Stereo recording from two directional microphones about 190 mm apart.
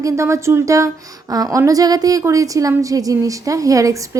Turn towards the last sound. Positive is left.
turn(degrees=-15)  # may be behind; listen again after turning